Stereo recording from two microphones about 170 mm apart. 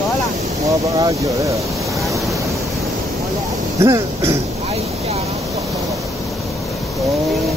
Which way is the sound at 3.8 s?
20° right (ahead or behind).